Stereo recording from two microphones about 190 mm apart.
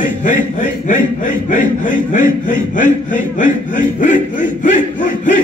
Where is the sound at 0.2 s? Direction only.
40° left (ahead or behind).